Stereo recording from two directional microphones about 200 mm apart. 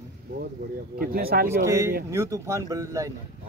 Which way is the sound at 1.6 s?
15° right (ahead or behind).